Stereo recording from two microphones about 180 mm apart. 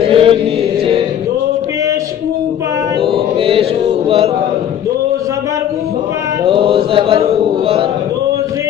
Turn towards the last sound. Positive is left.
turn(degrees=-30)  # may be behind; listen again after turning